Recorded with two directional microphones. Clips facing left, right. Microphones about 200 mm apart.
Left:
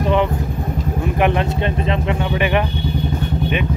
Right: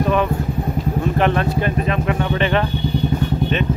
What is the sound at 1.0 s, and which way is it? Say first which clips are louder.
Speech: left 1 dB; 15° left (ahead or behind).